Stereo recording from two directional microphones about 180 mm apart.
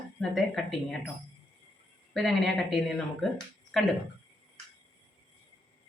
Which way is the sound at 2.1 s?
Centre (ahead or behind).